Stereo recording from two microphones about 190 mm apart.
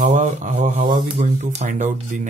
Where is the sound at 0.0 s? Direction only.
40° right (ahead or behind).